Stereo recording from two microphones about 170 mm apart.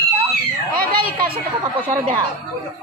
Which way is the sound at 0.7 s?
60° right (ahead or behind).